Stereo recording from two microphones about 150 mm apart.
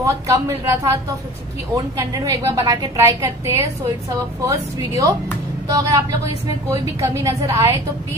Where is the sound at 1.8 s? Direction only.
25° right (ahead or behind).